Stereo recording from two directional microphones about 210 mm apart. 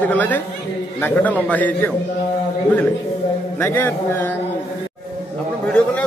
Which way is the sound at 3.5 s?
10° left (ahead or behind).